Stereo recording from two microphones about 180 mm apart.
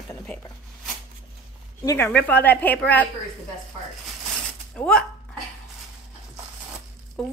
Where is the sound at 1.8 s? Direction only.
10° left (ahead or behind).